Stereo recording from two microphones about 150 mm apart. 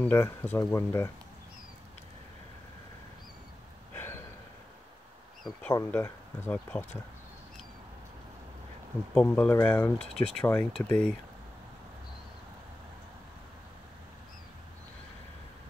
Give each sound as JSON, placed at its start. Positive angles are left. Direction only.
{"t": 0.0, "sound": "speech", "side_deg": 15}
{"t": 3.9, "sound": "a sound", "side_deg": 15}
{"t": 5.9, "sound": "speech", "side_deg": 15}
{"t": 9.1, "sound": "speech", "side_deg": 10}